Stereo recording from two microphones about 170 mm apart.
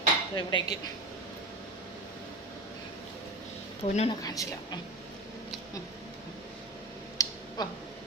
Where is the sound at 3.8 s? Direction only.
40° left (ahead or behind).